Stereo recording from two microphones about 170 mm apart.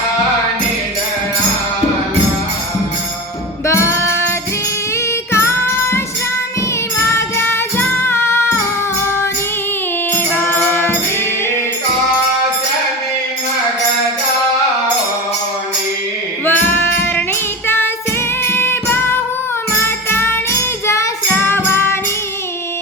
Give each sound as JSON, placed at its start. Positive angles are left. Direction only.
{"t": 3.7, "sound": "music", "side_deg": 15}
{"t": 5.3, "sound": "music", "side_deg": 15}
{"t": 7.1, "sound": "music", "side_deg": 15}
{"t": 10.3, "sound": "music", "side_deg": 10}
{"t": 16.5, "sound": "music", "side_deg": 10}
{"t": 17.7, "sound": "singing", "side_deg": 15}
{"t": 18.4, "sound": "music", "side_deg": 15}
{"t": 19.7, "sound": "jingle bell", "side_deg": 15}